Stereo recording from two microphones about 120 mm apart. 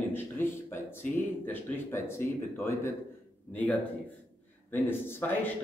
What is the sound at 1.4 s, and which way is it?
Speech, 15° left (ahead or behind).